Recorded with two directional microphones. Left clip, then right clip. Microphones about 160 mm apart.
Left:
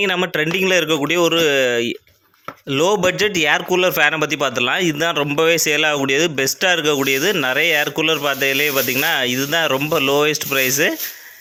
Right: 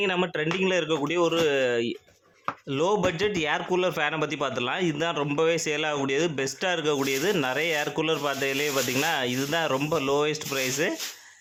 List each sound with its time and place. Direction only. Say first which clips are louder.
0.0 s a man's voice: left 8 dB; 20° left (ahead or behind)